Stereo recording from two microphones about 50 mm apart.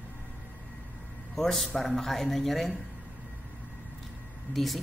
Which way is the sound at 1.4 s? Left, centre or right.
Centre.